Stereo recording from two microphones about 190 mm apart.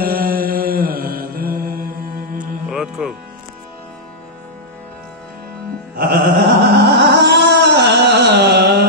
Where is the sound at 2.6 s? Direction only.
5° right (ahead or behind).